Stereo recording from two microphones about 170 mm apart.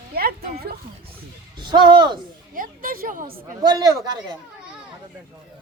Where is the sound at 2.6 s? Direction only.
55° right (ahead or behind).